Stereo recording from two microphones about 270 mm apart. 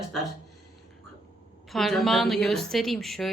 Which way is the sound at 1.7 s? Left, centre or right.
Centre.